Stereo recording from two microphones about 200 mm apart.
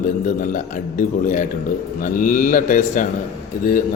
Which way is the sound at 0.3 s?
40° left (ahead or behind).